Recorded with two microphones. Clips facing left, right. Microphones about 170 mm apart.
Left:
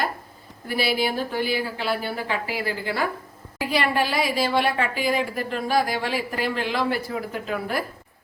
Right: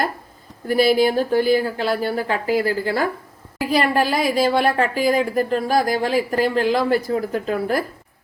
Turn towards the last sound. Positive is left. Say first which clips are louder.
# right 6 dB
turn(degrees=-40)  # may be behind; listen again after turning